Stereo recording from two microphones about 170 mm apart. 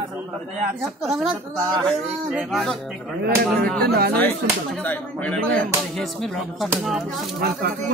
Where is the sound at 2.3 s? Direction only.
Centre (ahead or behind).